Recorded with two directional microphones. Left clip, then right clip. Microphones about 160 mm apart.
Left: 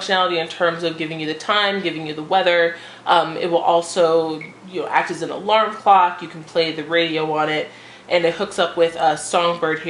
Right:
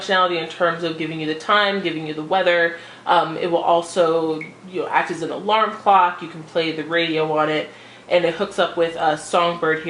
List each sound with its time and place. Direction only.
0.0 s speech: 20° left (ahead or behind)